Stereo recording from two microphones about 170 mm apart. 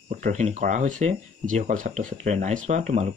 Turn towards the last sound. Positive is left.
turn(degrees=-40)  # may be behind; listen again after turning